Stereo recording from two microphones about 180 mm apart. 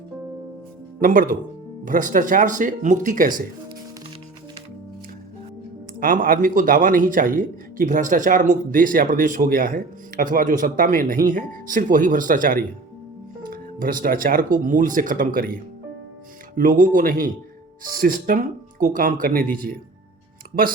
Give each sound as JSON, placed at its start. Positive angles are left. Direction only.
{"t": 1.0, "sound": "a man's voice", "side_deg": -50}
{"t": 6.0, "sound": "a man's voice", "side_deg": -50}